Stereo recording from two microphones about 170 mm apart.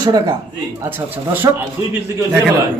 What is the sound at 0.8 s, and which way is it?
Speech, 10° right (ahead or behind).